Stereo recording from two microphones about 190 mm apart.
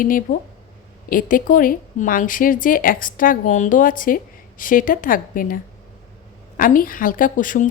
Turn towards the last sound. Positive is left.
turn(degrees=45)  # may be behind; listen again after turning